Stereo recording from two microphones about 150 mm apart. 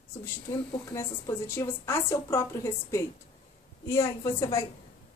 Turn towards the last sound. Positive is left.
turn(degrees=20)  # may be behind; listen again after turning